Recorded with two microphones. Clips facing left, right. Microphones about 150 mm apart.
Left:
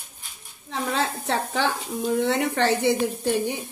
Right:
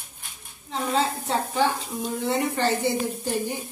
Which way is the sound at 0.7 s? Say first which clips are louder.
Right 1 dB; 75° left (ahead or behind).